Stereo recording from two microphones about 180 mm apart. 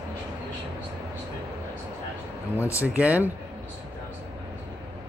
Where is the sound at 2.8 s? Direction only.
10° right (ahead or behind).